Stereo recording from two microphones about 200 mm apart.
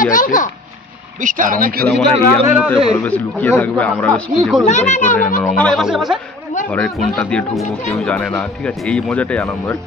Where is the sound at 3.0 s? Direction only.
10° left (ahead or behind).